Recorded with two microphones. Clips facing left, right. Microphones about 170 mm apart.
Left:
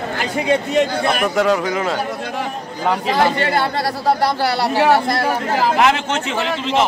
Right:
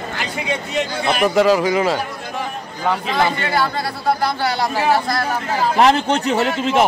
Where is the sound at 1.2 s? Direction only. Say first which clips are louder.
Right 5 dB; centre (ahead or behind).